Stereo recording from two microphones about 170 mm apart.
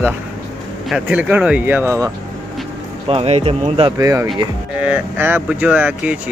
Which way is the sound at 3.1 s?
35° right (ahead or behind).